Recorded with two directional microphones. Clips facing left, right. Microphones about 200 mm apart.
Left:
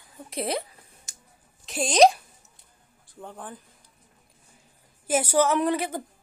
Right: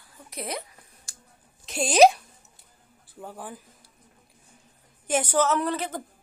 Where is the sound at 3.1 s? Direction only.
5° right (ahead or behind).